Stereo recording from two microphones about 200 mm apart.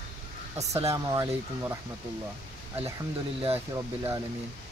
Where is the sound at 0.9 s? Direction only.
15° right (ahead or behind).